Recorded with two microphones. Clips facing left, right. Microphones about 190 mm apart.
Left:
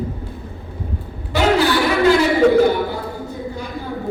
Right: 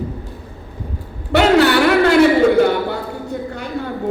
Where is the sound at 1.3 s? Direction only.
65° right (ahead or behind).